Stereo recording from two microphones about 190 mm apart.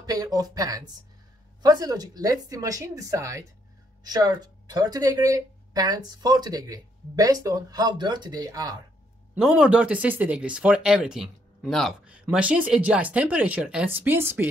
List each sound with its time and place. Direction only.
0.0 s speech: 20° right (ahead or behind)
9.3 s speech: 5° right (ahead or behind)